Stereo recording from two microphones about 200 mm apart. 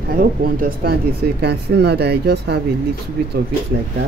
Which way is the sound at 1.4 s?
55° right (ahead or behind).